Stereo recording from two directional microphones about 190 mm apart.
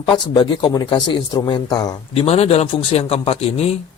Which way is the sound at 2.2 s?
30° left (ahead or behind).